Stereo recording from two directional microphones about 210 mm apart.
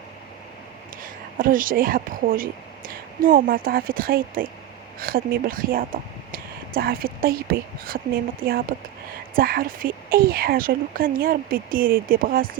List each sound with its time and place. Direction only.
1.0 s speech: 40° right (ahead or behind)